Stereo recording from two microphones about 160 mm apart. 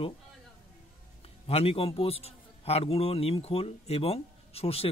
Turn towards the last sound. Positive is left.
turn(degrees=40)  # may be behind; listen again after turning